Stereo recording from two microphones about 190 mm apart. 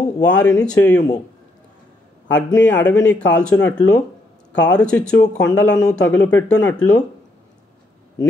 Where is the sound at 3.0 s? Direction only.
5° left (ahead or behind).